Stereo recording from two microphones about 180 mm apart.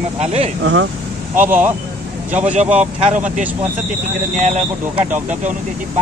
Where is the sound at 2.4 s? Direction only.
40° right (ahead or behind).